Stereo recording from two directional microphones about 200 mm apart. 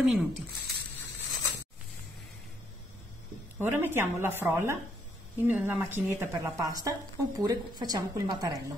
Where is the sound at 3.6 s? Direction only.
10° right (ahead or behind).